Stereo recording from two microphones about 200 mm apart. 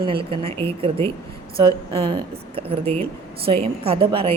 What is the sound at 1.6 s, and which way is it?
A woman's voice, 25° right (ahead or behind).